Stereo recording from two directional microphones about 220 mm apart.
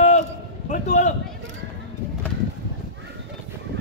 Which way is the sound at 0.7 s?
35° left (ahead or behind).